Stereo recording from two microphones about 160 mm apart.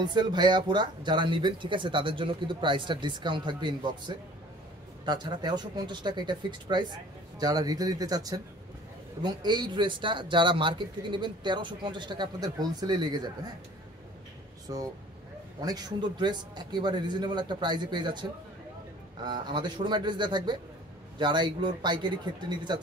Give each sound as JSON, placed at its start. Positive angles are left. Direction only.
{"t": 0.0, "sound": "speech", "side_deg": -30}
{"t": 14.7, "sound": "speech", "side_deg": -25}
{"t": 19.2, "sound": "speech", "side_deg": -30}